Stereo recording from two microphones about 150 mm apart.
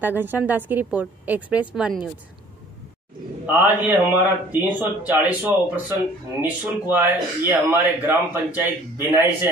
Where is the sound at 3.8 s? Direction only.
15° right (ahead or behind).